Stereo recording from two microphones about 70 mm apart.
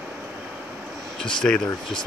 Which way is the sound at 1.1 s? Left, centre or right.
Centre.